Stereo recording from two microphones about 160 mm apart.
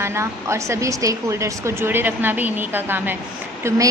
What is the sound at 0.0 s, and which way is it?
A woman's voice, 15° right (ahead or behind).